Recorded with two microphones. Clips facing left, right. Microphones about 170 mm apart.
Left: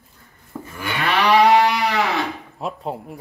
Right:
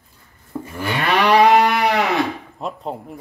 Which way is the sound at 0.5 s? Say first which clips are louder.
Right 4 dB; 10° right (ahead or behind).